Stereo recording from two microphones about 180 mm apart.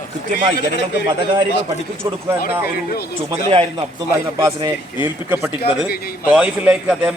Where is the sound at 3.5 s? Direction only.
30° right (ahead or behind).